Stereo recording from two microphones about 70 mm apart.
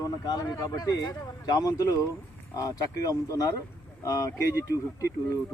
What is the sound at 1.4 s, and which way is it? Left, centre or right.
Speech, left.